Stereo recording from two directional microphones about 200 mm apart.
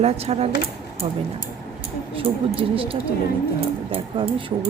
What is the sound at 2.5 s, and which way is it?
Speech, 25° right (ahead or behind).